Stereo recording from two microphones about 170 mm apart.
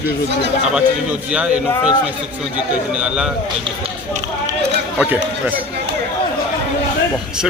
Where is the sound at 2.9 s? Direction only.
5° right (ahead or behind).